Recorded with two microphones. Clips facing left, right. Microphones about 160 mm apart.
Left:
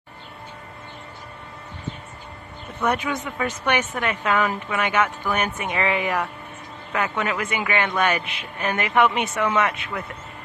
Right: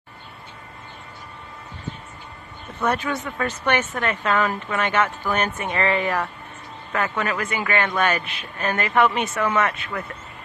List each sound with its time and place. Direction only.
2.8 s speech: 15° left (ahead or behind)